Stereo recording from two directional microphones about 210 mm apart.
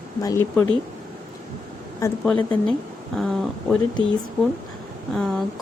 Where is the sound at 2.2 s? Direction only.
5° left (ahead or behind).